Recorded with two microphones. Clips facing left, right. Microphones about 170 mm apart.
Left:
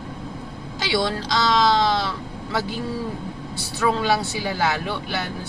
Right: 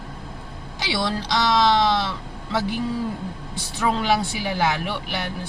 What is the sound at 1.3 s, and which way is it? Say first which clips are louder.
Speech: even; 15° right (ahead or behind).